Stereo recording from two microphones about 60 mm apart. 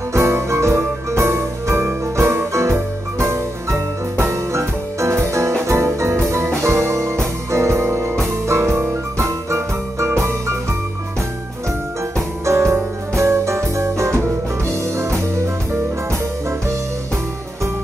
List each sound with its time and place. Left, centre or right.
0.1 s music: right
12.4 s music: right
15.3 s music: right